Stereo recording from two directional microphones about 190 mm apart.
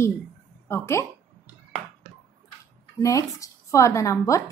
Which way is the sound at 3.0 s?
15° left (ahead or behind).